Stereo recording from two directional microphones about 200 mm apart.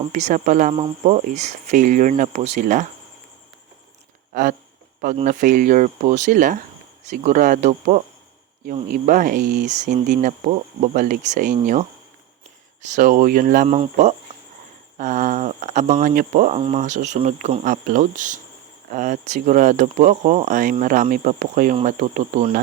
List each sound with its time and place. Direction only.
0.1 s speech: 35° right (ahead or behind)
5.1 s speech: 40° right (ahead or behind)
12.9 s speech: 45° right (ahead or behind)